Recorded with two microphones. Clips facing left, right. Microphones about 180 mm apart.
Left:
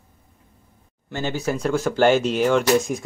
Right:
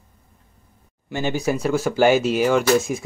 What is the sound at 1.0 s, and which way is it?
Speech, 15° right (ahead or behind).